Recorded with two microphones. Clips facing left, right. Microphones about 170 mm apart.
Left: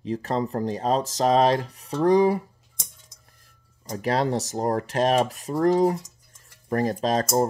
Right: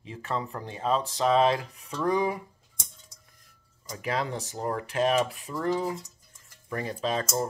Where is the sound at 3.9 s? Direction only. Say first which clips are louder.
Left 7 dB; 35° left (ahead or behind).